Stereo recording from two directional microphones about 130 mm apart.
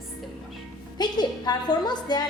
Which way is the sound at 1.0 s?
30° left (ahead or behind).